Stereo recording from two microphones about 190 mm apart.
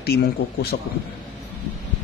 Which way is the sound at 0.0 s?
60° left (ahead or behind).